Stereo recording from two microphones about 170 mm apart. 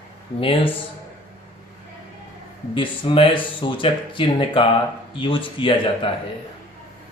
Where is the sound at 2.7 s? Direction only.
30° left (ahead or behind).